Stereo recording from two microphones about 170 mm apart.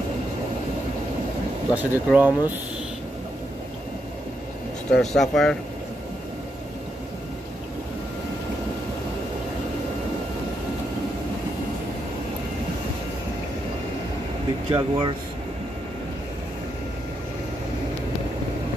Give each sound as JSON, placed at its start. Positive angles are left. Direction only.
{"t": 1.7, "sound": "speech", "side_deg": -10}
{"t": 4.9, "sound": "speech", "side_deg": 5}
{"t": 14.7, "sound": "speech", "side_deg": -25}